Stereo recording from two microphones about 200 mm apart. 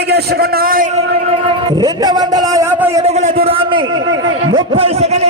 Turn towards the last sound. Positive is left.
turn(degrees=-30)  # may be behind; listen again after turning